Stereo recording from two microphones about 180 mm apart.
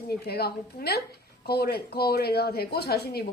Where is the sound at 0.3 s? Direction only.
60° left (ahead or behind).